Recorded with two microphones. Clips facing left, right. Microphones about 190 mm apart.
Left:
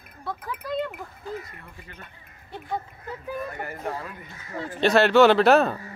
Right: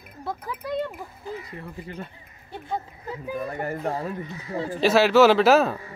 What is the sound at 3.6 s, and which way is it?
Speech, 40° right (ahead or behind).